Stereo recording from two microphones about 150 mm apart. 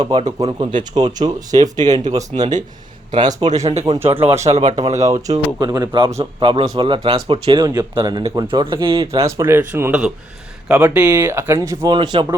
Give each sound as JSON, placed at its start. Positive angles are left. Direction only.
{"t": 0.0, "sound": "speech", "side_deg": -30}
{"t": 0.9, "sound": "speech", "side_deg": -25}
{"t": 1.8, "sound": "speech", "side_deg": -50}
{"t": 5.0, "sound": "speech", "side_deg": -20}
{"t": 9.2, "sound": "speech", "side_deg": -15}
{"t": 10.7, "sound": "speech", "side_deg": -5}
{"t": 11.1, "sound": "speech", "side_deg": -15}